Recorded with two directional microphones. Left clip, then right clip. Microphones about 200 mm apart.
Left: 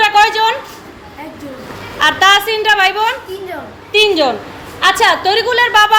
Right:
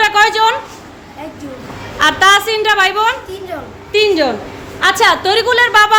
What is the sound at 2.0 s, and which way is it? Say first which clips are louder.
A woman's voice: even; 20° right (ahead or behind).